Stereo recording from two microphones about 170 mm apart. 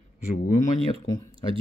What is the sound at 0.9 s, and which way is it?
Speech, 35° right (ahead or behind).